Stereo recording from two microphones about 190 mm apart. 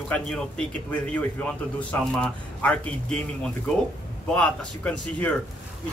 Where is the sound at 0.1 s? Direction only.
5° left (ahead or behind).